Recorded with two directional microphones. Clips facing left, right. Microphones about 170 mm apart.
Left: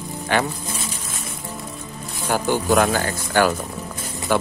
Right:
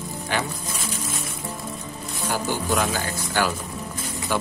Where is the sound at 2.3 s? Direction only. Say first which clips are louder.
Left 6 dB; 55° left (ahead or behind).